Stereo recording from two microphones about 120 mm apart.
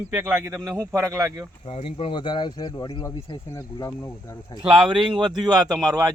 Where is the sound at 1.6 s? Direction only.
50° left (ahead or behind).